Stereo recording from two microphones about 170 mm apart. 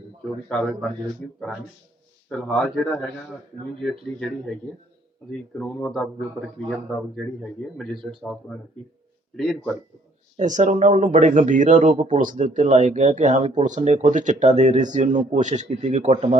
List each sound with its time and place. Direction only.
0.4 s speech: 5° left (ahead or behind)
2.3 s speech: 5° left (ahead or behind)
9.3 s speech: 5° left (ahead or behind)
10.3 s speech: 45° right (ahead or behind)